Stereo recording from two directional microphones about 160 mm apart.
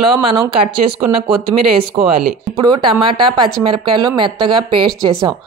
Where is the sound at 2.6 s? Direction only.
30° right (ahead or behind).